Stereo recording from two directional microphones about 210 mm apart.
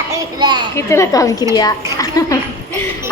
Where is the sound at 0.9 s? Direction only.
15° left (ahead or behind).